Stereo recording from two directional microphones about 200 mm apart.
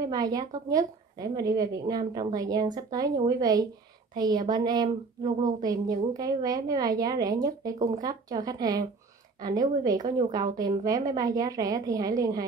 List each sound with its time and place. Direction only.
0.0 s a woman's voice: 20° right (ahead or behind)